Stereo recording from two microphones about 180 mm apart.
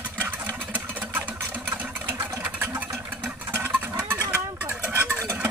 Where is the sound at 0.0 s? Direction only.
10° right (ahead or behind).